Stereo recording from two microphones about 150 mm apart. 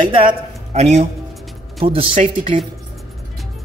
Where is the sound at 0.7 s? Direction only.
50° right (ahead or behind).